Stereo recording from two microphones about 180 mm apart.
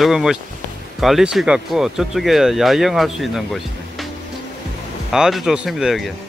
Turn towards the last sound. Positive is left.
turn(degrees=0)  # may be behind; listen again after turning